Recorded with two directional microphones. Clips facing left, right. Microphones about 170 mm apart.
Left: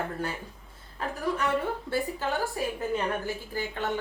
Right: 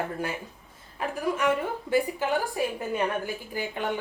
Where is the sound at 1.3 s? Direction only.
10° right (ahead or behind).